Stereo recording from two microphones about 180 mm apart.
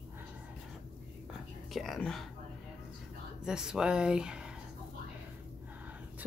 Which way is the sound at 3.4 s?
5° right (ahead or behind).